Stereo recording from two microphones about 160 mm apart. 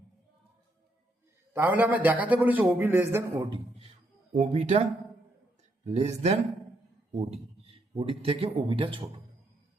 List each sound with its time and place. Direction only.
1.5 s a man's voice: 10° right (ahead or behind)
3.4 s speech: 35° right (ahead or behind)